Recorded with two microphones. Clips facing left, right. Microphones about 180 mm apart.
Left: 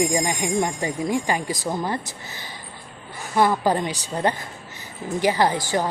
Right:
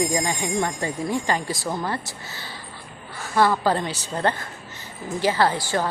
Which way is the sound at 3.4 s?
15° left (ahead or behind).